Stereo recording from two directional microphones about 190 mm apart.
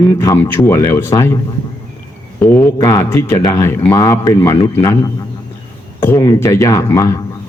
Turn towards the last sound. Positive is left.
turn(degrees=15)  # may be behind; listen again after turning